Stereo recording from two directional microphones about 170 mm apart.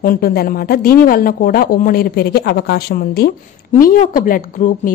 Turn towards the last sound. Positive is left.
turn(degrees=50)  # may be behind; listen again after turning